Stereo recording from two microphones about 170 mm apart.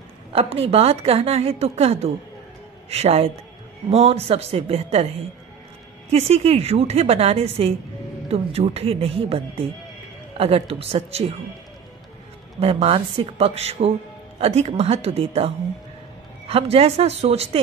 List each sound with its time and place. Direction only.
0.3 s a woman's voice: 35° right (ahead or behind)
6.0 s a woman's voice: 35° right (ahead or behind)
12.5 s a woman's voice: 35° right (ahead or behind)